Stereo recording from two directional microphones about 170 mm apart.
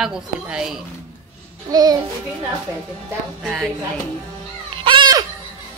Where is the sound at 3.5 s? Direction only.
Centre (ahead or behind).